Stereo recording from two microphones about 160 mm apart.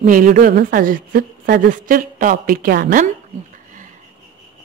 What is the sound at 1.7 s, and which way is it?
Speech, 60° right (ahead or behind).